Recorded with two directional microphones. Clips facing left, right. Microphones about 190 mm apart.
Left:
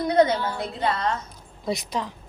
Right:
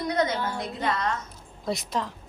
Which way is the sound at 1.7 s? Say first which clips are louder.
Left 1 dB; centre (ahead or behind).